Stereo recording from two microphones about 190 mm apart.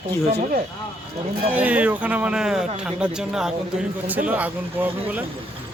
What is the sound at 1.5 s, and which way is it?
Speech, 10° right (ahead or behind).